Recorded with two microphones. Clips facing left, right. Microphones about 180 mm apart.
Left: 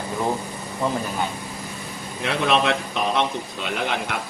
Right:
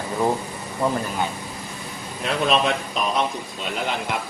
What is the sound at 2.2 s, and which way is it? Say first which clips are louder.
A man's voice: even; 80° left.